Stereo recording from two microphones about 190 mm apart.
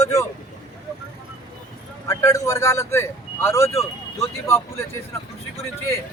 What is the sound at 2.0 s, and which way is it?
A man's voice, 15° left (ahead or behind).